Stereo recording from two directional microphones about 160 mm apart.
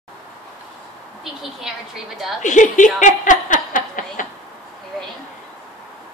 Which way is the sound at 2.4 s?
50° left (ahead or behind).